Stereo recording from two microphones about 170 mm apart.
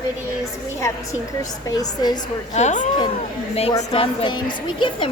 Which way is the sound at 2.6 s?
45° left (ahead or behind).